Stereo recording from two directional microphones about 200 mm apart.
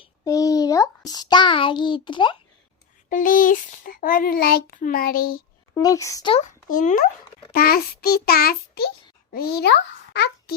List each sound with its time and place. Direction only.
0.0 s a child's voice: 15° left (ahead or behind)
3.1 s a child's voice: 40° left (ahead or behind)
5.7 s speech: 15° left (ahead or behind)
6.7 s a child's voice: 45° left (ahead or behind)